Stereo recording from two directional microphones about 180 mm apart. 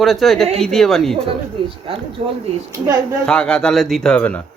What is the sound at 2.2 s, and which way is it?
Speech, 40° right (ahead or behind).